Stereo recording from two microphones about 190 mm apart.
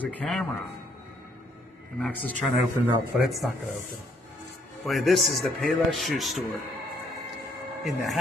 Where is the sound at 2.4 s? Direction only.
5° left (ahead or behind).